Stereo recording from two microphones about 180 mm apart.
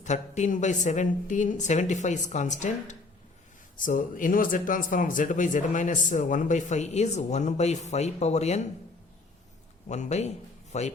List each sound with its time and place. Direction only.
0.0 s a woman's voice: 40° left (ahead or behind)
9.9 s a man's voice: 40° left (ahead or behind)